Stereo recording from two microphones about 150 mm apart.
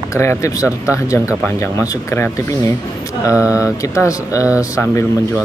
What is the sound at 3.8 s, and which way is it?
Speech, 20° left (ahead or behind).